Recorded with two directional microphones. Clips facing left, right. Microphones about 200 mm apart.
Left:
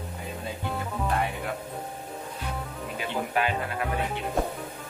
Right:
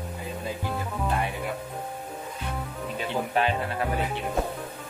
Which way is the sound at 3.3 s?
30° right (ahead or behind).